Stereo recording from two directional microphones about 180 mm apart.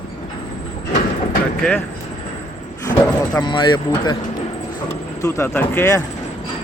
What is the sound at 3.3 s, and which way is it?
Speech, 25° left (ahead or behind).